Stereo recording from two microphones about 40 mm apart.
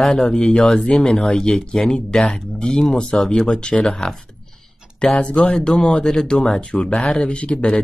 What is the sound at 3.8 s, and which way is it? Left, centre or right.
Speech, centre.